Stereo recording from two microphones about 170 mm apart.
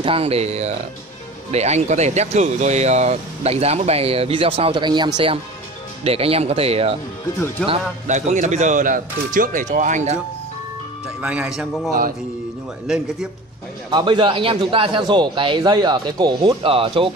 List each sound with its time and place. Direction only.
0.0 s speech: 35° right (ahead or behind)
7.3 s speech: 10° left (ahead or behind)
8.1 s speech: 45° right (ahead or behind)
11.1 s speech: 5° right (ahead or behind)
13.8 s speech: 25° right (ahead or behind)